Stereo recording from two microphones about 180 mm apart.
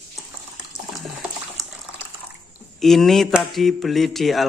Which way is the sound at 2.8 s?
Centre (ahead or behind).